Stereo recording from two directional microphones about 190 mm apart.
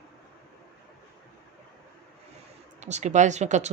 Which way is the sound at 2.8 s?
35° right (ahead or behind).